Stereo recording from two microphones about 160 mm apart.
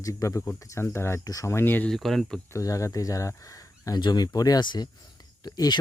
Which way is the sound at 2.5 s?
20° left (ahead or behind).